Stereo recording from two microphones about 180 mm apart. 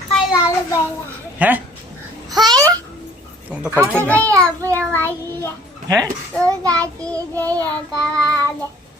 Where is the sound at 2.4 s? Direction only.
20° right (ahead or behind).